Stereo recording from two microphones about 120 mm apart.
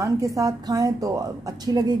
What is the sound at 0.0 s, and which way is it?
A woman's voice, 30° right (ahead or behind).